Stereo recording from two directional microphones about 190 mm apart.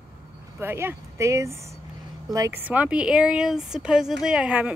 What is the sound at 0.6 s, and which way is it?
A woman's voice, 10° right (ahead or behind).